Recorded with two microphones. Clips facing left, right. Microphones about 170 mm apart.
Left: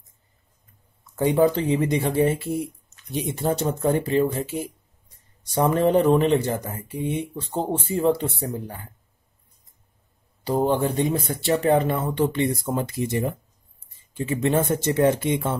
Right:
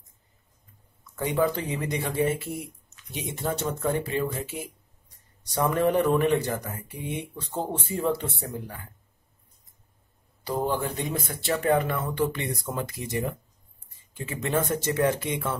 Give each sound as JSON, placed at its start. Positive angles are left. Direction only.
{"t": 1.1, "sound": "speech", "side_deg": 30}
{"t": 10.4, "sound": "speech", "side_deg": 25}